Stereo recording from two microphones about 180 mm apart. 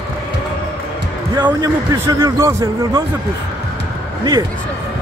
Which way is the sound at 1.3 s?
20° right (ahead or behind).